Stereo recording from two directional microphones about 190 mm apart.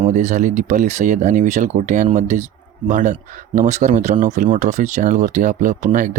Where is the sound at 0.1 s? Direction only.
40° right (ahead or behind).